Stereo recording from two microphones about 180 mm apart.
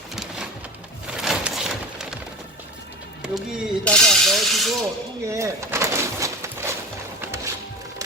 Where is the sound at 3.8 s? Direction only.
5° left (ahead or behind).